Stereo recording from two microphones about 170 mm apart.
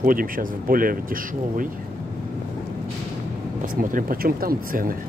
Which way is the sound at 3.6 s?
50° right (ahead or behind).